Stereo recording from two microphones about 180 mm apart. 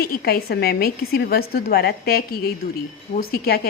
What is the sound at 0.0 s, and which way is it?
A woman's voice, 60° left (ahead or behind).